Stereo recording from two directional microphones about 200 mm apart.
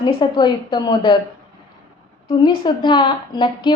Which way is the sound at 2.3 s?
25° left (ahead or behind).